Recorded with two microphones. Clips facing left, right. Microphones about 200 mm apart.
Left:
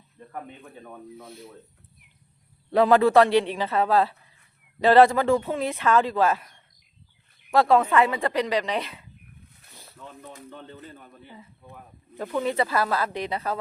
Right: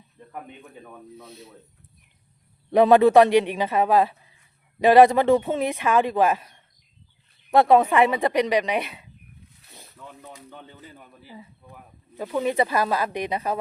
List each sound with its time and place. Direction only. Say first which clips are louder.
1.1 s speech: left 1 dB; 20° right (ahead or behind)
2.7 s speech: right 3 dB; 20° right (ahead or behind)
7.5 s speech: right 2 dB; 20° right (ahead or behind)
10.5 s speech: left 2 dB; 5° right (ahead or behind)